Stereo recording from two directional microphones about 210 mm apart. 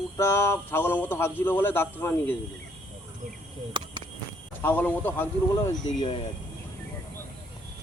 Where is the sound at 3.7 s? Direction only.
25° right (ahead or behind).